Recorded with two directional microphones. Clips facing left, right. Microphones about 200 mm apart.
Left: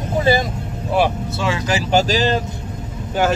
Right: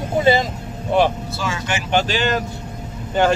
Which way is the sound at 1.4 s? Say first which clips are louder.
Left 4 dB; 30° left (ahead or behind).